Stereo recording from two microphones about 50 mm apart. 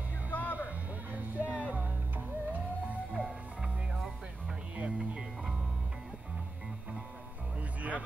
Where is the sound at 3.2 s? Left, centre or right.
Centre.